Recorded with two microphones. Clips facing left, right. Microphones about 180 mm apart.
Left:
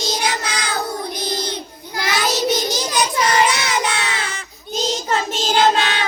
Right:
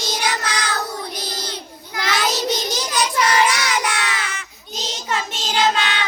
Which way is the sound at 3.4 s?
25° left (ahead or behind).